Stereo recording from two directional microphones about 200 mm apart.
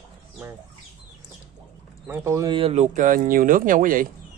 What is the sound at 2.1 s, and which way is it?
Speech, 15° right (ahead or behind).